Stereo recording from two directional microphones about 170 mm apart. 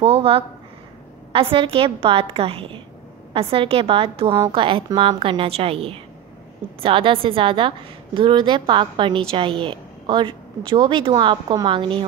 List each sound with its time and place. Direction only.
0.0 s a woman's voice: 35° right (ahead or behind)